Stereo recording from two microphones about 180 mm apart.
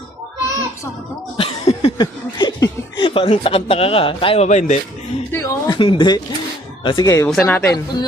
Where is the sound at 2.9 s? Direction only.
30° left (ahead or behind).